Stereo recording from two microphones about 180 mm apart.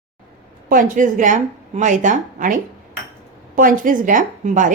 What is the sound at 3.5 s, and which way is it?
A woman's voice, 50° right (ahead or behind).